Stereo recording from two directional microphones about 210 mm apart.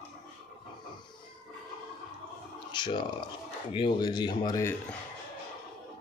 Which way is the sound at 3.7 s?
25° left (ahead or behind).